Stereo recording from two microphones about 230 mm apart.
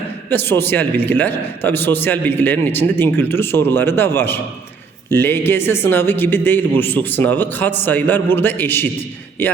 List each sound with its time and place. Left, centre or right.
0.3 s speech: centre